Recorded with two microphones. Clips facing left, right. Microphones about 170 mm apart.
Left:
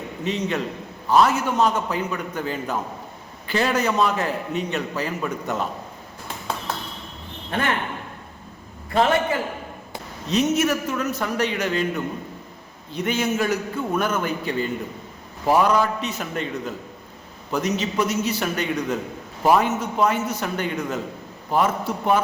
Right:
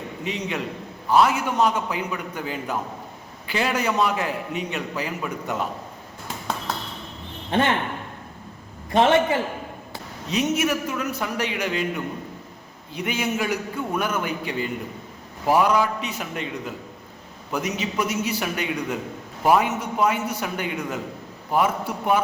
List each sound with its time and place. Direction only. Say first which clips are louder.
0.3 s a man's voice: left 4 dB; 10° right (ahead or behind)
8.9 s a man's voice: right 1 dB; 20° right (ahead or behind)
10.2 s a man's voice: left 2 dB; 10° right (ahead or behind)
12.9 s a man's voice: left 3 dB; 10° right (ahead or behind)